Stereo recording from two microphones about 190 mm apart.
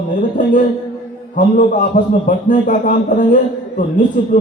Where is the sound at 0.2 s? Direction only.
45° left (ahead or behind).